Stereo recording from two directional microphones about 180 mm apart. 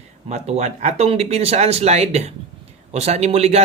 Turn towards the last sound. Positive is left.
turn(degrees=-35)  # may be behind; listen again after turning